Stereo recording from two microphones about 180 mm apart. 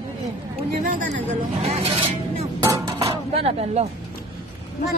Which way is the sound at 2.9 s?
35° right (ahead or behind).